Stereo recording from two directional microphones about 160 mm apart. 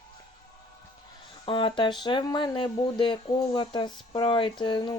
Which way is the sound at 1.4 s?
30° left (ahead or behind).